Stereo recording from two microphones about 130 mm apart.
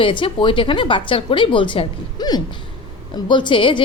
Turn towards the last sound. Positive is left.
turn(degrees=40)  # may be behind; listen again after turning